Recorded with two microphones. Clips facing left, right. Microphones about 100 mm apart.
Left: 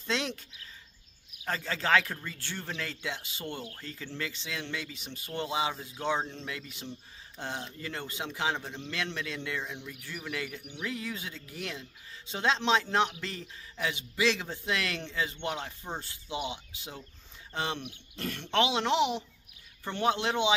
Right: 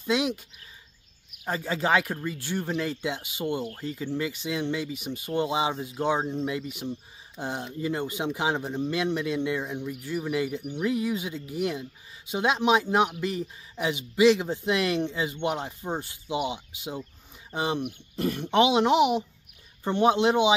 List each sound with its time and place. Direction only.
0.0 s speech: 10° right (ahead or behind)
1.4 s speech: 15° right (ahead or behind)